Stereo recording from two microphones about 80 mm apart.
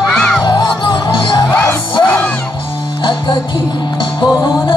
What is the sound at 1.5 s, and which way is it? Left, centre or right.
Music, left.